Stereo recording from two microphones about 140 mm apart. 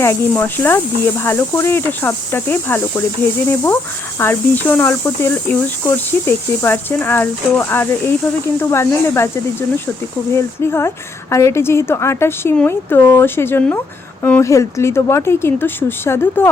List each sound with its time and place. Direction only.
0.0 s a woman's voice: 15° left (ahead or behind)